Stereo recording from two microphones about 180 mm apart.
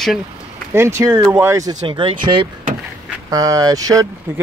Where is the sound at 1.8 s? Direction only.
30° right (ahead or behind).